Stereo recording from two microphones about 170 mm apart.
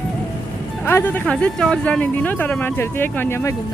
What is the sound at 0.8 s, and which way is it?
Speech, 10° left (ahead or behind).